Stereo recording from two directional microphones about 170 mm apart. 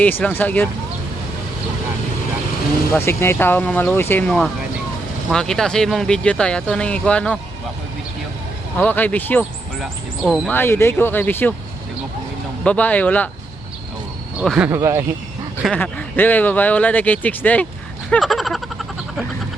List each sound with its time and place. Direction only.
0.0 s speech: 10° left (ahead or behind)
2.9 s speech: 15° left (ahead or behind)
8.8 s speech: 10° left (ahead or behind)
9.4 s speech: centre (ahead or behind)
12.6 s speech: 10° left (ahead or behind)
14.3 s speech: 5° right (ahead or behind)
14.7 s speech: 15° right (ahead or behind)
15.6 s speech: 10° left (ahead or behind)
18.1 s a sound: centre (ahead or behind)